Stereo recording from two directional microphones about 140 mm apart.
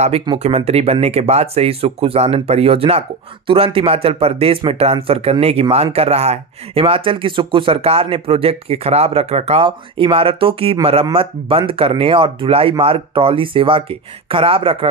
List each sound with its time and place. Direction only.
0.4 s speech: 45° right (ahead or behind)